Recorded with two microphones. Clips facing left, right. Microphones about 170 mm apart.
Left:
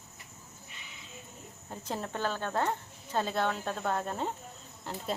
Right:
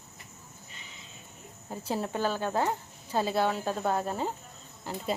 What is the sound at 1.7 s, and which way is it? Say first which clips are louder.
Speech: right 5 dB; 10° right (ahead or behind).